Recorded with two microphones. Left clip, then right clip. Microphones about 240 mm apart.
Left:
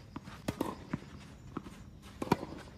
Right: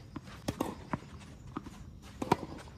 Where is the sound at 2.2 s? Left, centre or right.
Centre.